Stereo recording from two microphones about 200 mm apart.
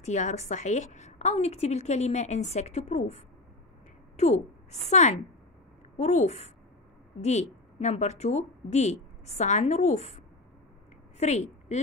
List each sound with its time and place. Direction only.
0.0 s a woman's voice: 35° left (ahead or behind)
4.2 s a woman's voice: 35° left (ahead or behind)